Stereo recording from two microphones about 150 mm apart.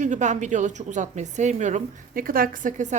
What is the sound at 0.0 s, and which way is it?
A woman's voice, 55° right (ahead or behind).